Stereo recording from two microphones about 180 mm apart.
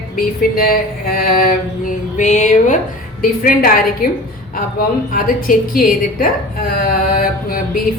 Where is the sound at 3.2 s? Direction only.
55° left (ahead or behind).